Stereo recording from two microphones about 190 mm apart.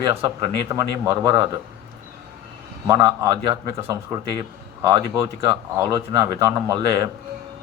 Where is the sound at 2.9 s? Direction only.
25° right (ahead or behind).